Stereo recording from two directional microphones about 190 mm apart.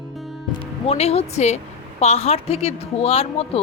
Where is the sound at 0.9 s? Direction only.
35° left (ahead or behind).